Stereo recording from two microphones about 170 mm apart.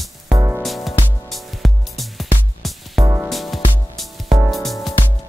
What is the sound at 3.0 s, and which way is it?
Music, 10° right (ahead or behind).